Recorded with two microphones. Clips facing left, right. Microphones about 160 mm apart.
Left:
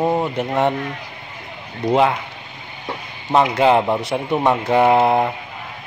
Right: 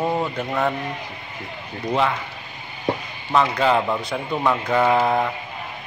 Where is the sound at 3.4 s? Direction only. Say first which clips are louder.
Left 4 dB; 25° left (ahead or behind).